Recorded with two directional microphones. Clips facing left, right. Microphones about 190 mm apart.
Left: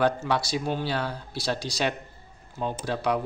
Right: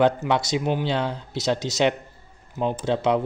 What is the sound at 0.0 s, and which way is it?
Speech, 20° right (ahead or behind).